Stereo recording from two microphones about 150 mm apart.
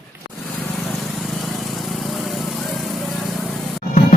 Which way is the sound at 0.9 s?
Centre (ahead or behind).